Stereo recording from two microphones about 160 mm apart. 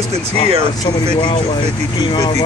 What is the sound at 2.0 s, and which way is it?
Speech, 30° left (ahead or behind).